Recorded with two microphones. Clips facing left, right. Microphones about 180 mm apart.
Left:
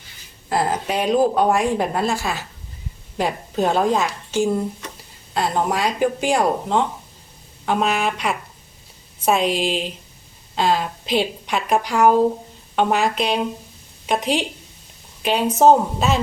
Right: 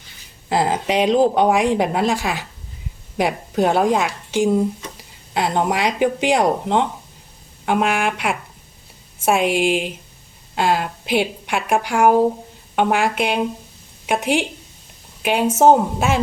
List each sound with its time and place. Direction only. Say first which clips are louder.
0.5 s speech: right 3 dB; 20° right (ahead or behind)
9.5 s a woman's voice: right 3 dB; 10° right (ahead or behind)